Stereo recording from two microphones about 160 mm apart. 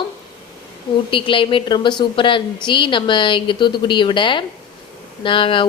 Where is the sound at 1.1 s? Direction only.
30° left (ahead or behind).